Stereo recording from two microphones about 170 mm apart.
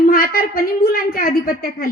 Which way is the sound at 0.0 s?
60° left (ahead or behind).